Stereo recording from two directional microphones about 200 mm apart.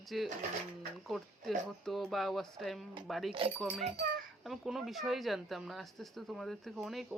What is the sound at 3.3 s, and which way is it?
Speech, 30° right (ahead or behind).